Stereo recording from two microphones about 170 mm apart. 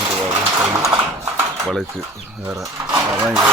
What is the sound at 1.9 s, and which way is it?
Speech, 15° right (ahead or behind).